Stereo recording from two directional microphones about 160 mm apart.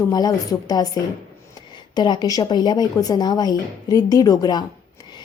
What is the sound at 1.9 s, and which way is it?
Speech, 25° left (ahead or behind).